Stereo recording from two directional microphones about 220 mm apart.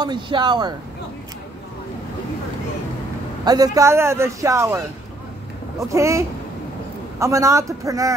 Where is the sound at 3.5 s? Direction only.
15° right (ahead or behind).